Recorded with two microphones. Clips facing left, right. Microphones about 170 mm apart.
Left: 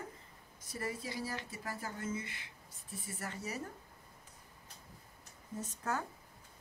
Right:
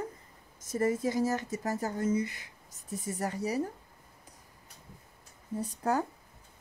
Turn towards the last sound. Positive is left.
turn(degrees=-35)  # may be behind; listen again after turning